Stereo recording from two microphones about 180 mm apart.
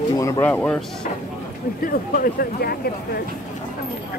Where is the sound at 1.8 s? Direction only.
55° left (ahead or behind).